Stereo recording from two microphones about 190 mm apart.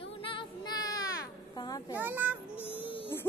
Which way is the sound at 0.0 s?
30° left (ahead or behind).